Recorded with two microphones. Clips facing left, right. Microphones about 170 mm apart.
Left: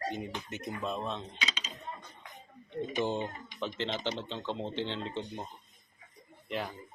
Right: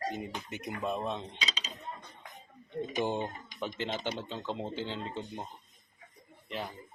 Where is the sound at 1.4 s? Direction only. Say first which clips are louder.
Left 1 dB; 40° right (ahead or behind).